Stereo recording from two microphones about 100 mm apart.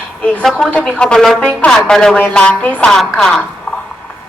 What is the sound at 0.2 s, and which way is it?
A woman's voice, 10° left (ahead or behind).